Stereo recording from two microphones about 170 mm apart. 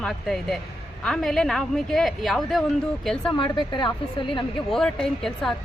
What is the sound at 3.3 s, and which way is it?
A woman's voice, 25° left (ahead or behind).